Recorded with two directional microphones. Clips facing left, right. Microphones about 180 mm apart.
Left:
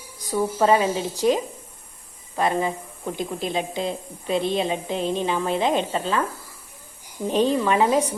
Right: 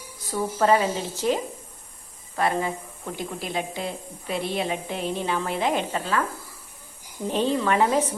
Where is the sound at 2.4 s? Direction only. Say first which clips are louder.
Left 2 dB; 20° left (ahead or behind).